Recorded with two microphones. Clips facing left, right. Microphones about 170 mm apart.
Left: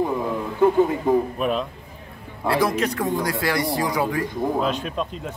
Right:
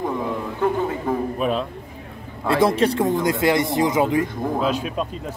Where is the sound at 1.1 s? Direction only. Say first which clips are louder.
Left 4 dB; 20° left (ahead or behind).